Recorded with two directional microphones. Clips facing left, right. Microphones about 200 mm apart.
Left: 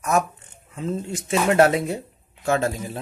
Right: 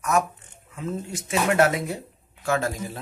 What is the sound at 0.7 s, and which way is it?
Speech, 30° left (ahead or behind).